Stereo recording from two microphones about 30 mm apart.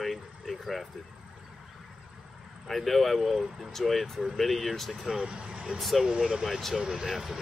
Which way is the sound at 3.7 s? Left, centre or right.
Centre.